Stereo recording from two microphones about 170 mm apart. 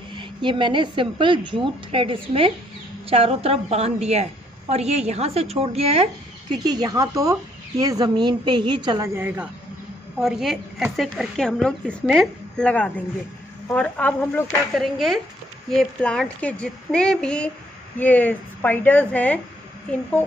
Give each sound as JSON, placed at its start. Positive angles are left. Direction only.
{"t": 0.1, "sound": "a woman's voice", "side_deg": -30}
{"t": 6.6, "sound": "a woman's voice", "side_deg": -25}
{"t": 9.1, "sound": "a woman's voice", "side_deg": -10}
{"t": 10.2, "sound": "a woman's voice", "side_deg": 0}